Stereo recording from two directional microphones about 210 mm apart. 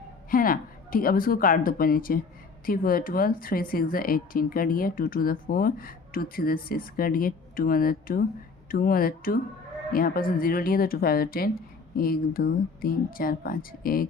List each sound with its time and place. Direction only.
0.3 s speech: 40° left (ahead or behind)